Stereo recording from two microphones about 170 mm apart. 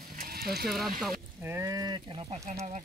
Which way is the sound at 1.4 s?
15° right (ahead or behind).